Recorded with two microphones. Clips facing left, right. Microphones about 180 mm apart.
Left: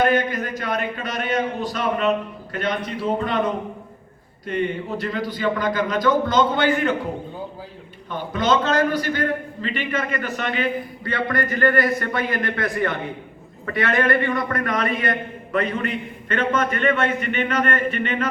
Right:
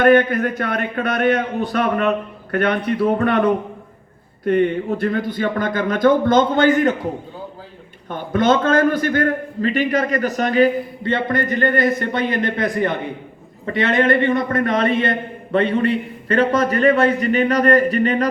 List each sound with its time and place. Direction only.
0.0 s a man's voice: 60° right (ahead or behind); by 6.9 s 45° right (ahead or behind)
8.1 s a man's voice: 50° right (ahead or behind)
11.0 s a man's voice: 25° right (ahead or behind)